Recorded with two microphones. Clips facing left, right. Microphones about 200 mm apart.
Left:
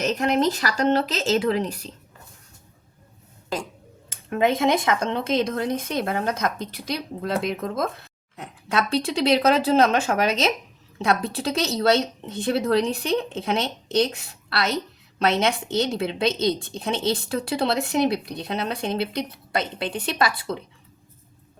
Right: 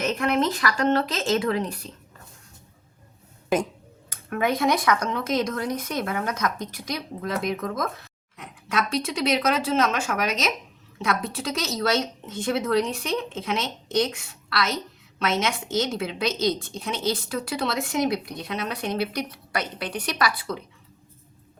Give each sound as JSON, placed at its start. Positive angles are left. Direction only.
{"t": 0.2, "sound": "a woman's voice", "side_deg": 35}
{"t": 4.1, "sound": "a woman's voice", "side_deg": 25}